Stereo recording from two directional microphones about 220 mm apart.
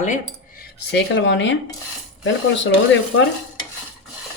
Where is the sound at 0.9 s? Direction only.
50° left (ahead or behind).